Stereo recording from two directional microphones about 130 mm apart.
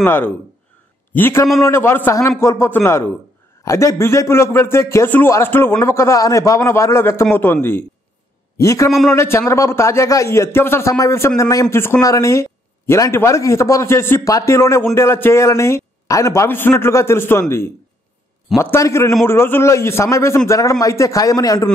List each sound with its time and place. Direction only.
0.0 s a man's voice: 15° left (ahead or behind)